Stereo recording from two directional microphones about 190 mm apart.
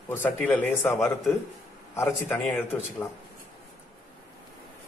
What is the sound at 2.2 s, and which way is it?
Speech, 5° left (ahead or behind).